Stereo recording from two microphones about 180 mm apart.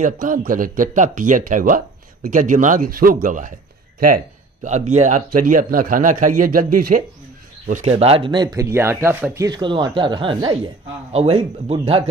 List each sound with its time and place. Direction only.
0.0 s a man's voice: 45° right (ahead or behind)
4.6 s a man's voice: 40° right (ahead or behind)
7.6 s speech: 40° right (ahead or behind)